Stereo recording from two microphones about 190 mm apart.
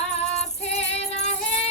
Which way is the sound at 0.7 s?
35° left (ahead or behind).